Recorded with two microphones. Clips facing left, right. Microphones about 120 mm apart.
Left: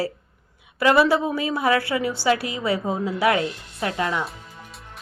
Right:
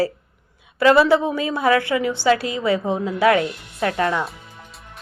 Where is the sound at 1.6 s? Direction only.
25° left (ahead or behind).